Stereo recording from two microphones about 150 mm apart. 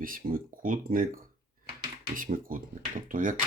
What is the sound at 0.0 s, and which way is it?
Speech, 70° right (ahead or behind).